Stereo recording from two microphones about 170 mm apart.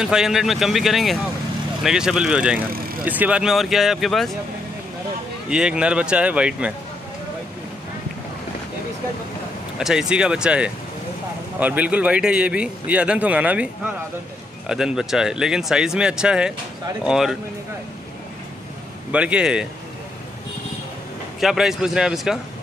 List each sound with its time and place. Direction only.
0.0 s speech: 5° right (ahead or behind)
5.5 s a man's voice: 5° right (ahead or behind)
9.8 s a man's voice: 5° right (ahead or behind)
14.7 s speech: 5° right (ahead or behind)
19.1 s speech: 5° right (ahead or behind)
21.4 s speech: 5° right (ahead or behind)